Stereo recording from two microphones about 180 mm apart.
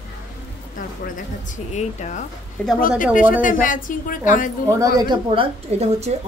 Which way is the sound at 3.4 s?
45° left (ahead or behind).